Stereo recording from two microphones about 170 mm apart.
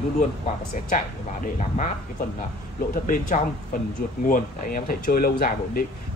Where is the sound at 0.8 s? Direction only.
50° left (ahead or behind).